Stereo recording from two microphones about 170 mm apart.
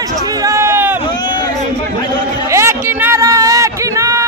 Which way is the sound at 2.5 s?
15° right (ahead or behind).